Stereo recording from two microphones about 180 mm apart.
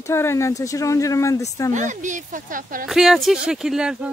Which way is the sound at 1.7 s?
45° right (ahead or behind).